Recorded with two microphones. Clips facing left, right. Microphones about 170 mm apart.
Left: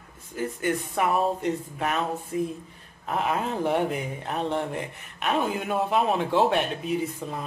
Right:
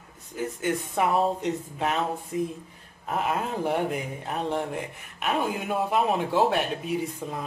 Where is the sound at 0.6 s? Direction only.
20° right (ahead or behind).